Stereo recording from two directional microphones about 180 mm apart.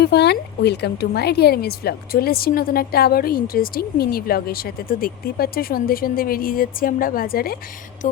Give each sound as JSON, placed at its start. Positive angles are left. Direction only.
{"t": 0.0, "sound": "speech", "side_deg": 65}